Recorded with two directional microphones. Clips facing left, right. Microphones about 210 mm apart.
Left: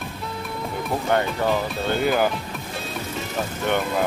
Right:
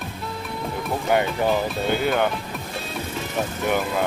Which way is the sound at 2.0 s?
Centre (ahead or behind).